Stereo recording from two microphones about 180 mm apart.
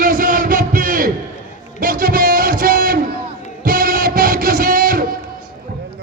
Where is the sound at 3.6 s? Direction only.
50° right (ahead or behind).